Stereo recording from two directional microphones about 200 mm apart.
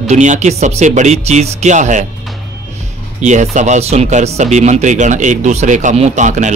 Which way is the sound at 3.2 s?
35° right (ahead or behind).